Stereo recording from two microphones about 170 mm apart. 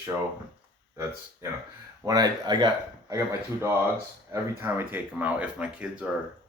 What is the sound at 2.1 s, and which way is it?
Speech, 25° right (ahead or behind).